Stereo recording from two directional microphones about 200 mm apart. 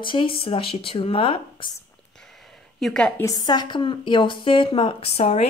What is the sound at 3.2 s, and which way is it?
A woman's voice, 20° left (ahead or behind).